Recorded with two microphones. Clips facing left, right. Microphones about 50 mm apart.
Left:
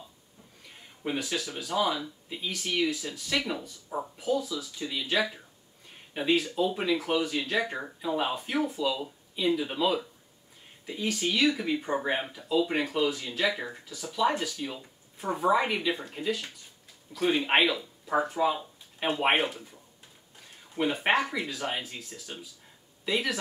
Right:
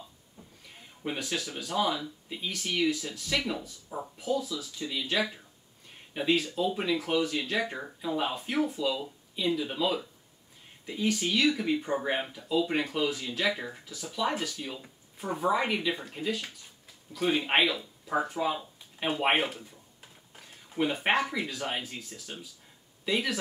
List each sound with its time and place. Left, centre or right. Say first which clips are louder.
1.0 s speech: left 2 dB; centre
4.2 s speech: left 1 dB; centre
20.8 s speech: left 1 dB; centre